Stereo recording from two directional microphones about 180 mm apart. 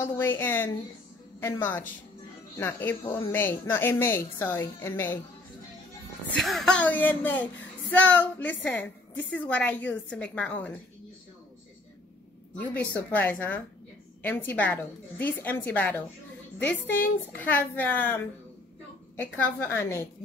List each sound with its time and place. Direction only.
0.2 s speech: 10° left (ahead or behind)
6.3 s speech: centre (ahead or behind)
12.5 s speech: 10° left (ahead or behind)